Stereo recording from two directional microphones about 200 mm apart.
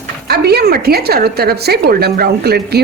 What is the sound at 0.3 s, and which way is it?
A woman's voice, 50° right (ahead or behind).